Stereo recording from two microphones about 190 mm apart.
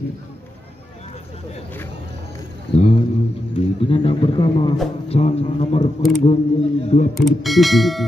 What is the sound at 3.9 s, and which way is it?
A man's voice, 30° left (ahead or behind).